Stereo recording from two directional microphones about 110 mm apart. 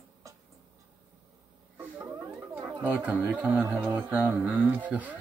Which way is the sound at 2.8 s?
15° right (ahead or behind).